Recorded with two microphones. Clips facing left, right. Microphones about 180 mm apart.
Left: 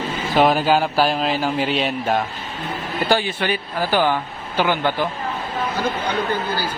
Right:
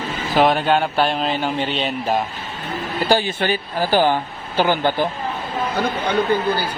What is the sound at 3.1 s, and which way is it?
Speech, 45° right (ahead or behind).